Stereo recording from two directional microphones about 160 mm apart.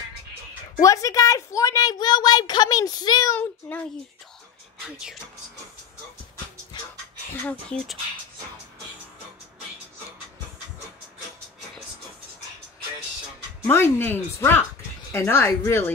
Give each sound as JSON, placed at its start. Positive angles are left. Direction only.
{"t": 0.7, "sound": "a woman's voice", "side_deg": 20}
{"t": 6.7, "sound": "a sound", "side_deg": 30}
{"t": 7.4, "sound": "speech", "side_deg": 5}
{"t": 13.7, "sound": "speech", "side_deg": 15}